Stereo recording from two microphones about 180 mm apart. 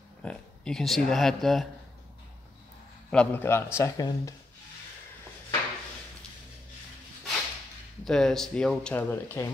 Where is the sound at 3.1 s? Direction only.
10° left (ahead or behind).